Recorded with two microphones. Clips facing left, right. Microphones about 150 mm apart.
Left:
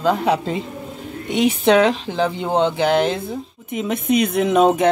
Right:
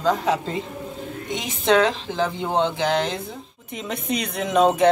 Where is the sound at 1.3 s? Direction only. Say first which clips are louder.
Left 14 dB; 65° left (ahead or behind).